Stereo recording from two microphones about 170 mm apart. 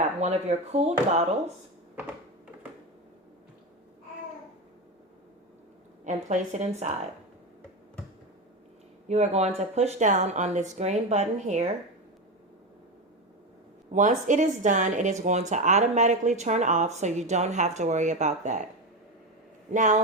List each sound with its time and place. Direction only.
0.0 s speech: 40° right (ahead or behind)
6.1 s speech: 45° right (ahead or behind)
9.0 s speech: 40° right (ahead or behind)
13.9 s speech: 45° right (ahead or behind)
19.7 s speech: 45° right (ahead or behind)